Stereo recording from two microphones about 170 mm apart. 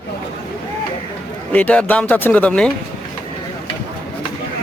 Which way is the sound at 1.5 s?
10° left (ahead or behind).